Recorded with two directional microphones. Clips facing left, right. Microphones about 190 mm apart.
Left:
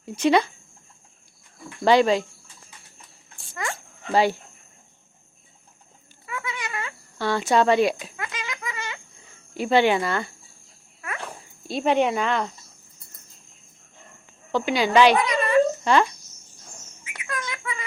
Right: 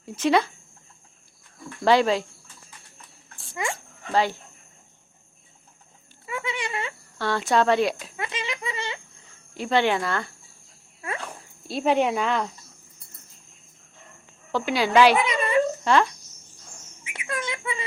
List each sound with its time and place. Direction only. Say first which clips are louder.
0.0 s speech: left 2 dB; centre (ahead or behind)
1.8 s speech: left 2 dB; centre (ahead or behind)
3.5 s speech: right 2 dB; 15° right (ahead or behind)
4.0 s speech: left 3 dB; 10° left (ahead or behind)
6.2 s a sound: right 2 dB; 25° right (ahead or behind)
7.2 s speech: left 2 dB; centre (ahead or behind)
8.1 s a sound: right 2 dB; 25° right (ahead or behind)
9.6 s speech: left 3 dB; 5° left (ahead or behind)
11.7 s speech: left 1 dB; centre (ahead or behind)
14.5 s speech: left 1 dB; centre (ahead or behind)
15.2 s dog: left 2 dB; 25° right (ahead or behind)
15.8 s speech: left 1 dB; centre (ahead or behind)
17.0 s a sound: right 2 dB; 25° right (ahead or behind)